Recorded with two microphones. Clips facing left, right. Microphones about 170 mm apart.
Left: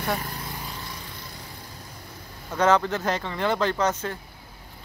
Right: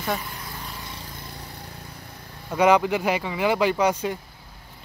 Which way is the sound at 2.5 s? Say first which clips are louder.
Right 3 dB; 10° right (ahead or behind).